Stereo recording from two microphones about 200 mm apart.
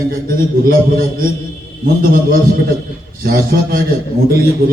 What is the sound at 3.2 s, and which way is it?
Speech, 45° right (ahead or behind).